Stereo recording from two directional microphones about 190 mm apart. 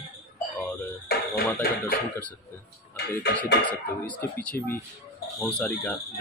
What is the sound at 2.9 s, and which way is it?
Speech, 60° left (ahead or behind).